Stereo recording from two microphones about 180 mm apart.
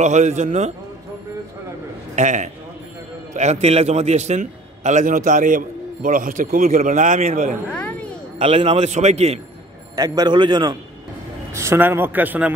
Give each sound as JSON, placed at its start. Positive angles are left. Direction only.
{"t": 0.0, "sound": "a man's voice", "side_deg": -40}
{"t": 2.1, "sound": "a man's voice", "side_deg": -40}
{"t": 7.7, "sound": "a sound", "side_deg": 5}
{"t": 8.4, "sound": "a man's voice", "side_deg": -35}
{"t": 9.9, "sound": "a man's voice", "side_deg": -20}
{"t": 11.5, "sound": "a man's voice", "side_deg": -15}